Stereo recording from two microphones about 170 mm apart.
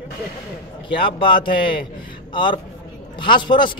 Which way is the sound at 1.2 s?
30° left (ahead or behind).